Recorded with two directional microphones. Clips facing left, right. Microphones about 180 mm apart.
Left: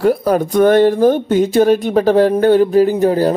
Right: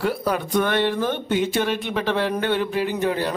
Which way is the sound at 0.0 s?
45° left (ahead or behind).